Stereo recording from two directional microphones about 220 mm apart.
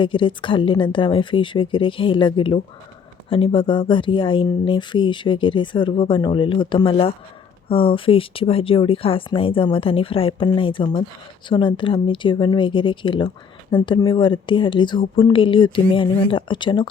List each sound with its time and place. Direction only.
0.0 s speech: 20° left (ahead or behind)